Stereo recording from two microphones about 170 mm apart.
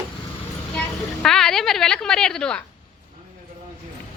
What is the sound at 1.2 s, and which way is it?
A woman's voice, 5° left (ahead or behind).